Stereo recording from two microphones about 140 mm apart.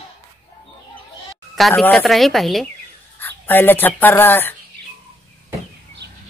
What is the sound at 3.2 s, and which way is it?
Speech, 15° left (ahead or behind).